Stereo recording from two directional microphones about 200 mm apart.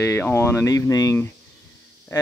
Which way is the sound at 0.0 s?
10° left (ahead or behind).